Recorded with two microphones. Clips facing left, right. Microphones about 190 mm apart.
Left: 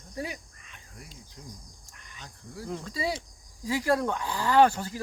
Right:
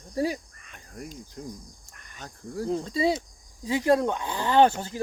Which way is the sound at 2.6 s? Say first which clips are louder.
Right 7 dB; 30° right (ahead or behind).